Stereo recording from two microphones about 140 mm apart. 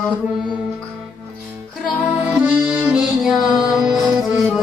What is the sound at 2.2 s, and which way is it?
Accordion, 10° right (ahead or behind).